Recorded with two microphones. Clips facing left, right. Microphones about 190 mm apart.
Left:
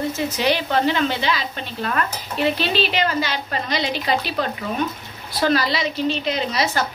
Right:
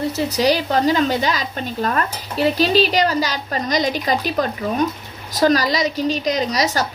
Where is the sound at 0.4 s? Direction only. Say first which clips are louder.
Right 3 dB; 40° right (ahead or behind).